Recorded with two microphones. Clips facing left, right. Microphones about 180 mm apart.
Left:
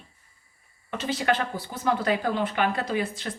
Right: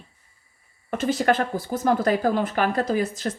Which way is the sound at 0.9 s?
45° right (ahead or behind).